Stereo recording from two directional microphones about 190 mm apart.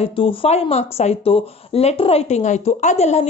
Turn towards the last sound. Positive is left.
turn(degrees=35)  # may be behind; listen again after turning